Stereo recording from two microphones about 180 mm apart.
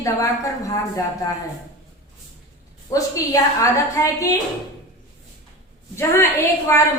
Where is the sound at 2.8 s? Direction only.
20° left (ahead or behind).